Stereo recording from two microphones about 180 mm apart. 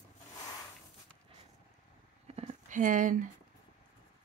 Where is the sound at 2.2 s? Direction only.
35° right (ahead or behind).